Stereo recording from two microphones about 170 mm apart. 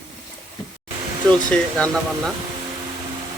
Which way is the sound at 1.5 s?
5° left (ahead or behind).